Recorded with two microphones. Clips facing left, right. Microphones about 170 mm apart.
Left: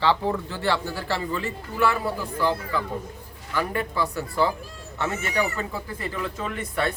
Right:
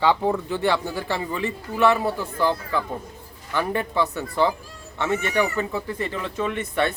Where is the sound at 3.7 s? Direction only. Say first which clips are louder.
Right 3 dB; 20° right (ahead or behind).